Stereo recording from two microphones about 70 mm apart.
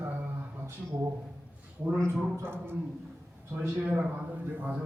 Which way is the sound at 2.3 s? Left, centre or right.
Right.